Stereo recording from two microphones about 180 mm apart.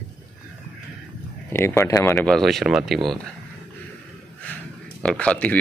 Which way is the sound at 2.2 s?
Centre (ahead or behind).